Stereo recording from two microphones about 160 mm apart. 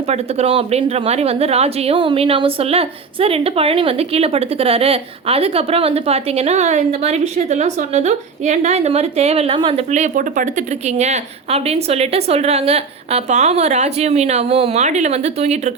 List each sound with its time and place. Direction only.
0.1 s a woman's voice: 40° right (ahead or behind)